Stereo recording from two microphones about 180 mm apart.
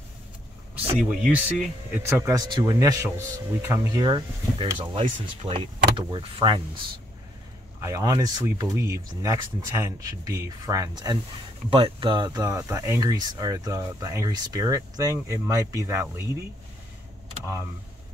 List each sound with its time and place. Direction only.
0.9 s speech: 5° right (ahead or behind); by 6.8 s 25° right (ahead or behind)
7.8 s speech: 20° right (ahead or behind)